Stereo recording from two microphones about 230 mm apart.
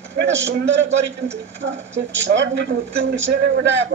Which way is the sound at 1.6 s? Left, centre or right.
Right.